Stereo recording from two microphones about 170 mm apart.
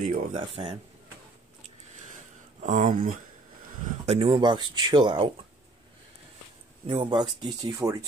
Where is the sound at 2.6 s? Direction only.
50° right (ahead or behind); by 5.3 s 30° right (ahead or behind).